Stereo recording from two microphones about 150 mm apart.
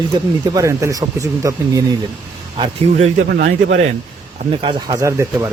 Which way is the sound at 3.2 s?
90° right.